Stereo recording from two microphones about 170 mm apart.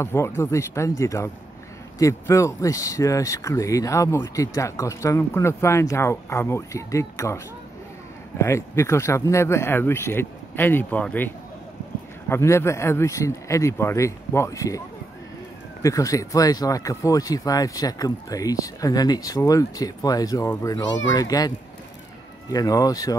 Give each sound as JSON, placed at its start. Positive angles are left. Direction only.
{"t": 0.0, "sound": "speech", "side_deg": 15}
{"t": 15.8, "sound": "speech", "side_deg": 20}